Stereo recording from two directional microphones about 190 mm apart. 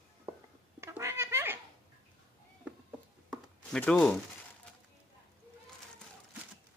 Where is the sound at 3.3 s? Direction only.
5° left (ahead or behind).